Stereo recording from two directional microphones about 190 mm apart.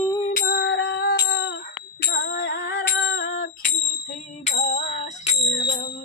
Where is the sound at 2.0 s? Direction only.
60° left (ahead or behind).